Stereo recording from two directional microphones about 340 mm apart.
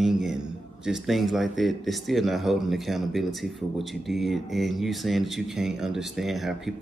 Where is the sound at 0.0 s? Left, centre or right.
Centre.